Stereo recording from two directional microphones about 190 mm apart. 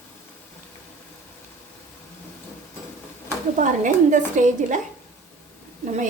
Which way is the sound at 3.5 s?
40° right (ahead or behind).